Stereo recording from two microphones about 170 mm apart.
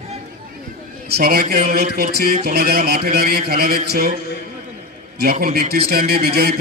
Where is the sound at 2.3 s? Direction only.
60° right (ahead or behind).